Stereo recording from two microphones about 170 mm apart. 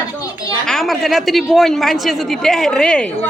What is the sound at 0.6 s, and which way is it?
A woman's voice, centre (ahead or behind).